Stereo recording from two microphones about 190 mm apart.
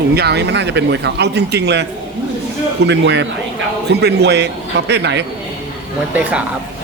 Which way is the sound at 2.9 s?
65° right (ahead or behind).